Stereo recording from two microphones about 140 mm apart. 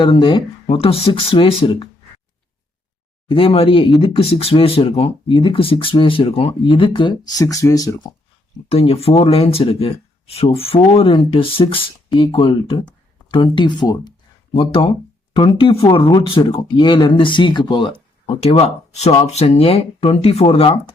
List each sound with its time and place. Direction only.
0.0 s speech: 35° left (ahead or behind)
3.2 s speech: 40° left (ahead or behind)
8.7 s speech: 45° left (ahead or behind)
14.5 s speech: 40° left (ahead or behind)